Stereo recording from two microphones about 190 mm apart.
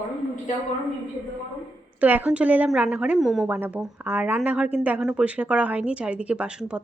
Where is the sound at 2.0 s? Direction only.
10° right (ahead or behind).